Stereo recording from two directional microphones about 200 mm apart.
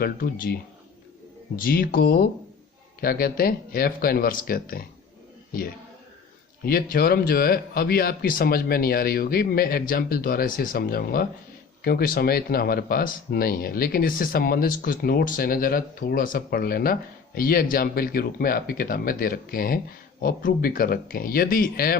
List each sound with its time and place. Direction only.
0.0 s a man's voice: 45° left (ahead or behind)